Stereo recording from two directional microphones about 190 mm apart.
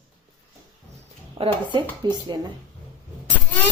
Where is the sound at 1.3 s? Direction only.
25° right (ahead or behind).